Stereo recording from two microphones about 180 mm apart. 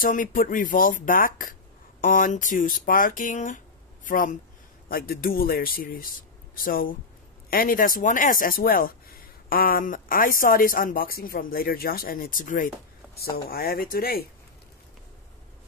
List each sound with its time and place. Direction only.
0.0 s speech: 50° left (ahead or behind)